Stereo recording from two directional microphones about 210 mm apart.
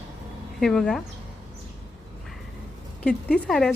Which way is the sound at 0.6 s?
Centre (ahead or behind).